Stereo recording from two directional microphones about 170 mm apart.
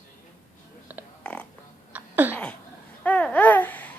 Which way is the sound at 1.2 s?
5° left (ahead or behind).